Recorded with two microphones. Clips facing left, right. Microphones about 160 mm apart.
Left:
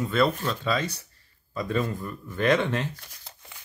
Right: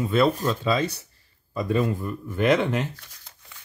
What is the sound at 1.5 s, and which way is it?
Speech, 10° right (ahead or behind).